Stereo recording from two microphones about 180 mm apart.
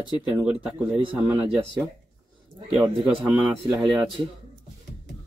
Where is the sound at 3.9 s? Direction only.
25° right (ahead or behind).